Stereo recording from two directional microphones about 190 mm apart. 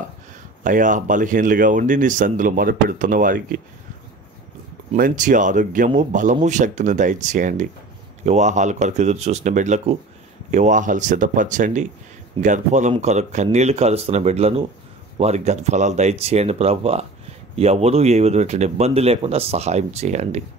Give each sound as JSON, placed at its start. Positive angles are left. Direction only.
{"t": 0.7, "sound": "speech", "side_deg": -40}
{"t": 4.9, "sound": "speech", "side_deg": -45}